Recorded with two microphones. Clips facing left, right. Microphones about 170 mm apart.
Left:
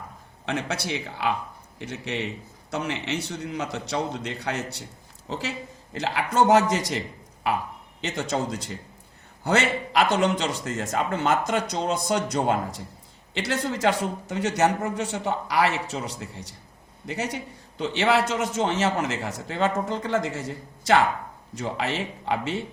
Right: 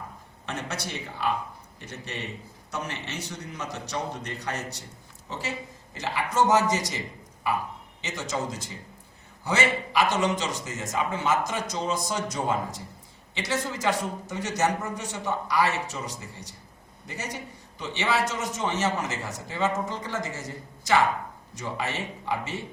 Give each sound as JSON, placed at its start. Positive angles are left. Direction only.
{"t": 0.4, "sound": "a man's voice", "side_deg": 70}
{"t": 8.0, "sound": "a man's voice", "side_deg": 60}
{"t": 21.6, "sound": "a man's voice", "side_deg": 70}